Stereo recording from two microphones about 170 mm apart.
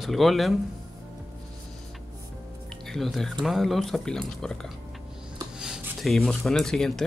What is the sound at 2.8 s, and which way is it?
Speech, centre (ahead or behind).